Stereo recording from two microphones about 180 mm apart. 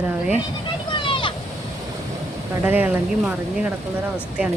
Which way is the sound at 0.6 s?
25° left (ahead or behind).